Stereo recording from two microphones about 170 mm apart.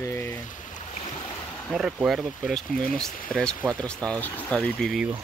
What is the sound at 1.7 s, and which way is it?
Speech, 5° right (ahead or behind).